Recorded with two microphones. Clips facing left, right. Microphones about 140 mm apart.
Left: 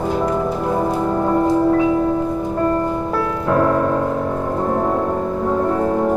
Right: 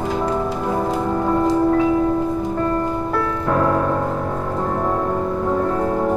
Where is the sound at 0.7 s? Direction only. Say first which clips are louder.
Left 2 dB; 5° left (ahead or behind).